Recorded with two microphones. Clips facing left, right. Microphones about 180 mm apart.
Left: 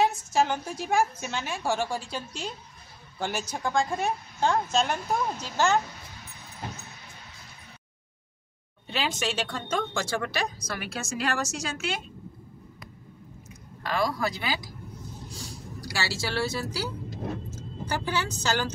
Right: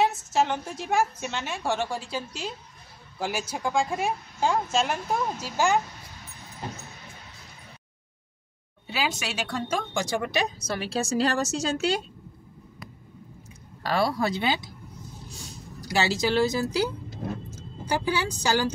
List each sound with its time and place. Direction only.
0.0 s a woman's voice: centre (ahead or behind)
8.8 s a woman's voice: 5° right (ahead or behind); by 12.0 s 35° right (ahead or behind)
13.8 s speech: 30° right (ahead or behind)
15.8 s speech: 20° right (ahead or behind)
17.8 s a woman's voice: 15° right (ahead or behind)